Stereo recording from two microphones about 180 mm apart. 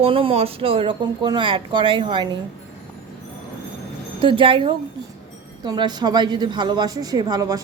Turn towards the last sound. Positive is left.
turn(degrees=-20)  # may be behind; listen again after turning